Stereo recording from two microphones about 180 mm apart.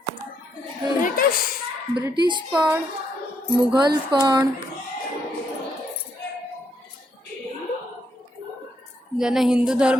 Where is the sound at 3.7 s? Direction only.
25° right (ahead or behind).